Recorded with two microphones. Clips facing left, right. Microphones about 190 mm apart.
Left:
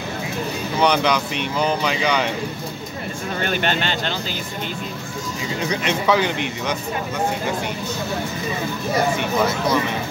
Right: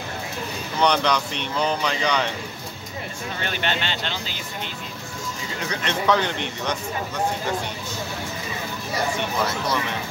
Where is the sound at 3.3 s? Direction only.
45° left (ahead or behind).